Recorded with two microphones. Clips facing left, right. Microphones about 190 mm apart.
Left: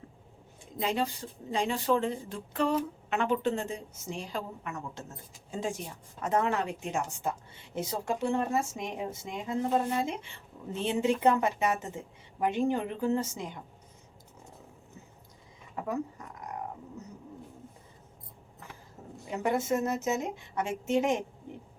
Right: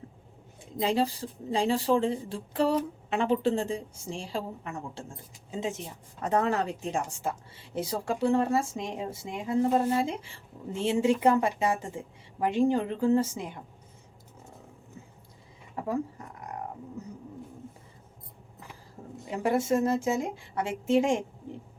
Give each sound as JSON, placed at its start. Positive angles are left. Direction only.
{"t": 0.8, "sound": "a woman's voice", "side_deg": -30}
{"t": 6.2, "sound": "a woman's voice", "side_deg": -35}
{"t": 8.8, "sound": "speech", "side_deg": 15}
{"t": 9.0, "sound": "speech", "side_deg": -25}
{"t": 12.4, "sound": "speech", "side_deg": 20}
{"t": 12.7, "sound": "speech", "side_deg": -25}
{"t": 15.7, "sound": "a sound", "side_deg": -30}
{"t": 19.3, "sound": "speech", "side_deg": -25}